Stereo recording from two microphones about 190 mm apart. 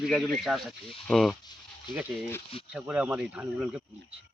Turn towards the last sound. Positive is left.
turn(degrees=-5)  # may be behind; listen again after turning